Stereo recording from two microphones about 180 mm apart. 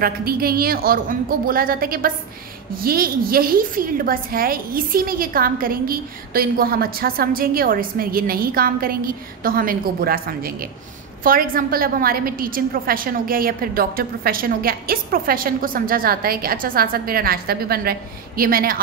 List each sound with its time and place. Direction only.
0.0 s a woman's voice: 55° right (ahead or behind)